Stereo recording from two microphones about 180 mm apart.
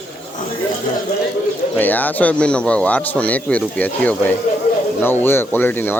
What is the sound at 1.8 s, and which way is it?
Speech, 10° left (ahead or behind).